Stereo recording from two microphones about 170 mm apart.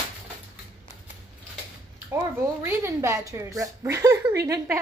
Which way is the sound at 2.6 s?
15° right (ahead or behind).